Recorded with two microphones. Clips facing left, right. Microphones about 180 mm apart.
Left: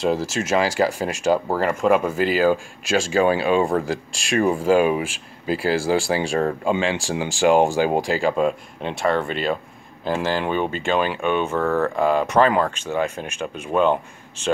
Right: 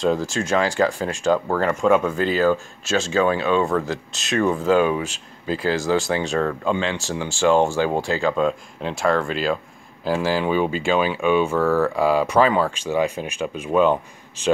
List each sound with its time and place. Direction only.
0.0 s speech: 5° left (ahead or behind)